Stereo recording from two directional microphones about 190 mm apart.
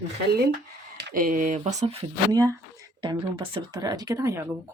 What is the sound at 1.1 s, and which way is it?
Speech, 45° right (ahead or behind).